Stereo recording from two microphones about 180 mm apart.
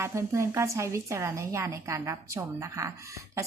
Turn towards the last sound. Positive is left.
turn(degrees=-15)  # may be behind; listen again after turning